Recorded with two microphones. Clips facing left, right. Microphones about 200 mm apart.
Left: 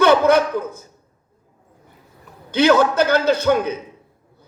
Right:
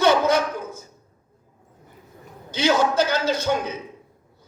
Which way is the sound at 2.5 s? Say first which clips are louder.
Left 5 dB; 55° left (ahead or behind).